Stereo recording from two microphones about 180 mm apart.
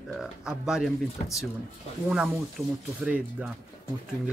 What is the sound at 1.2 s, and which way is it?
Speech, 40° left (ahead or behind).